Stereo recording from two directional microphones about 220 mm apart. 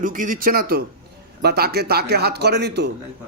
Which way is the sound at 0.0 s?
40° right (ahead or behind).